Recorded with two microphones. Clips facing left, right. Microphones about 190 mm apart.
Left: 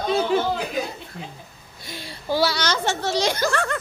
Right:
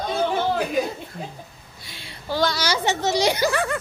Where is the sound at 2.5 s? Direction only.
10° right (ahead or behind).